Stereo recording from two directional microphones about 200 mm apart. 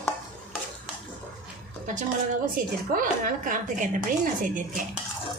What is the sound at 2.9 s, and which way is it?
A woman's voice, 45° right (ahead or behind).